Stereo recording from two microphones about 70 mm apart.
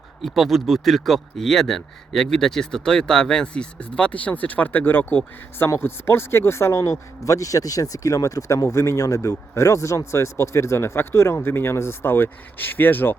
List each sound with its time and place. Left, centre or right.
0.2 s speech: centre; by 13.1 s left